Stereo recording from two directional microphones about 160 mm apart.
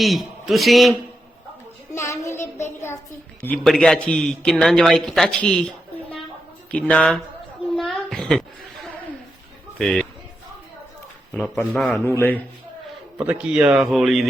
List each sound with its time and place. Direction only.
0.0 s a man's voice: centre (ahead or behind)
1.9 s child singing: 20° left (ahead or behind)
2.3 s child singing: 45° left (ahead or behind)
2.6 s a sound: 15° left (ahead or behind)
3.4 s a man's voice: 5° left (ahead or behind)
7.8 s a sound: centre (ahead or behind)
9.7 s a man's voice: 5° left (ahead or behind)
11.3 s a man's voice: 5° left (ahead or behind)
12.0 s speech: 10° left (ahead or behind)
13.1 s a man's voice: 5° right (ahead or behind)